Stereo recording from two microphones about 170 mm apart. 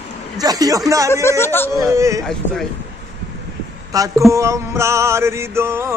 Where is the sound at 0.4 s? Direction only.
20° right (ahead or behind).